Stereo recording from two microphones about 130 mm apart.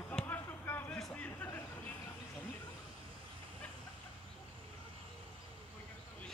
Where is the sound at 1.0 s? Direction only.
5° left (ahead or behind).